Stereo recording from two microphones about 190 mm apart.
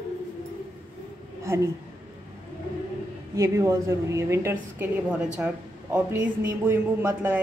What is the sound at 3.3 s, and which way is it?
A woman's voice, 15° right (ahead or behind).